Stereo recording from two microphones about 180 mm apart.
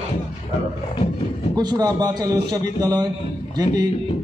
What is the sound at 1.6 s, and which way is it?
A man's voice, 25° right (ahead or behind).